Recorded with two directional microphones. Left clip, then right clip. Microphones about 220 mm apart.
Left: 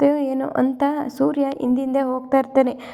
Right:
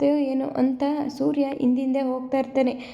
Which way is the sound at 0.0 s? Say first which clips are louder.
Left 3 dB; 20° left (ahead or behind).